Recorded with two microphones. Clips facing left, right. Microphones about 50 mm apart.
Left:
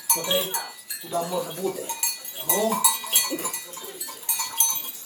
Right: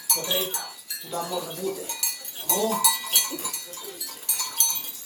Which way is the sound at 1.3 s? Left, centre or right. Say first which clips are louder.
Left 2 dB; centre.